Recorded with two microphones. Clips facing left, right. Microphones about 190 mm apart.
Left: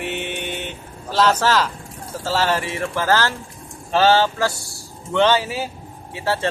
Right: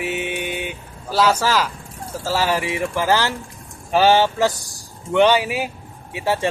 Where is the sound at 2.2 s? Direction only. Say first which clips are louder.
Even; 10° right (ahead or behind).